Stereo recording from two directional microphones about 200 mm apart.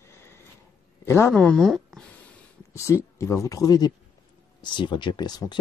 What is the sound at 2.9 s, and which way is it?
Speech, 15° left (ahead or behind).